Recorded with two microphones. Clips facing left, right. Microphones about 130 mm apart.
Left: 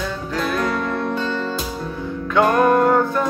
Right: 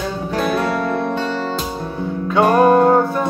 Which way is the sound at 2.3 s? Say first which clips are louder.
Right 3 dB; 20° right (ahead or behind).